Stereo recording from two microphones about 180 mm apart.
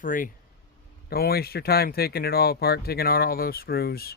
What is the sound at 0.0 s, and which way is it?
Speech, 50° left (ahead or behind).